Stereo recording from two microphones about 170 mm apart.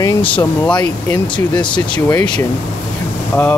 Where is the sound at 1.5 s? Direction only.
25° left (ahead or behind).